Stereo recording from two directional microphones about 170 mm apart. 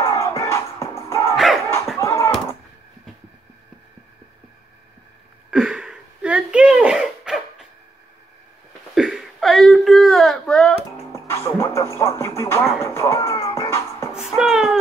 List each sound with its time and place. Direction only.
0.0 s music: 15° left (ahead or behind)
1.3 s dog: centre (ahead or behind)
2.0 s a sound: 15° left (ahead or behind)
5.5 s a sound: 5° right (ahead or behind)
8.9 s whimper: centre (ahead or behind)
11.1 s music: 15° left (ahead or behind)
14.1 s music: 5° right (ahead or behind)